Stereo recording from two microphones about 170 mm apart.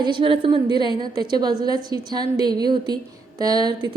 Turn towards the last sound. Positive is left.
turn(degrees=-25)  # may be behind; listen again after turning